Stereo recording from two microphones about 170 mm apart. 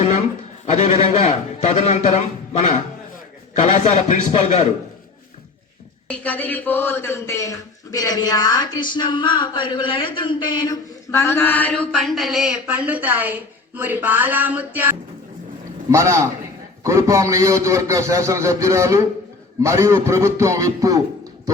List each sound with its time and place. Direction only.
0.0 s a man's voice: 40° left (ahead or behind)
6.1 s a man's voice: 10° left (ahead or behind); by 21.0 s 20° right (ahead or behind)